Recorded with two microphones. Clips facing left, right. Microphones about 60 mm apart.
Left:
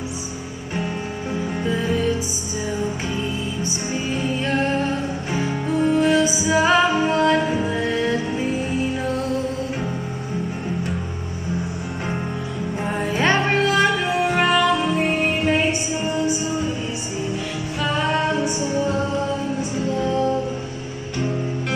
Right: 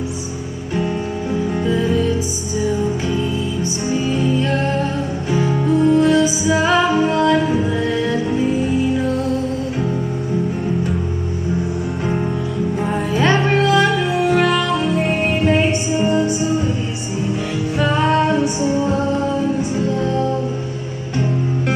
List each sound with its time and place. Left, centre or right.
1.7 s music: centre
5.8 s music: centre
6.1 s music: centre
12.8 s music: centre
17.8 s music: centre